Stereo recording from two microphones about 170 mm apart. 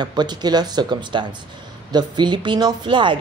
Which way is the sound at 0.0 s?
25° right (ahead or behind).